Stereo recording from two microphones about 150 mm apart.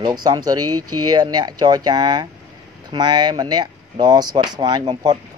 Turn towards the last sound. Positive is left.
turn(degrees=-25)  # may be behind; listen again after turning